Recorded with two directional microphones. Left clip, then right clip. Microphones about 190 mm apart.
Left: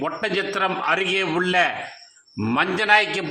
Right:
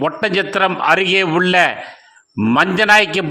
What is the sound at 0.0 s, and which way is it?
A man's voice, 40° right (ahead or behind).